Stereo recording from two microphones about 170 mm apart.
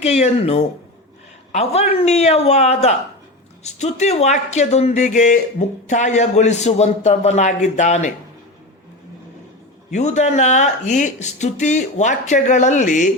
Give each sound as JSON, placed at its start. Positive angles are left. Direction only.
{"t": 0.0, "sound": "speech", "side_deg": 40}
{"t": 9.9, "sound": "speech", "side_deg": 45}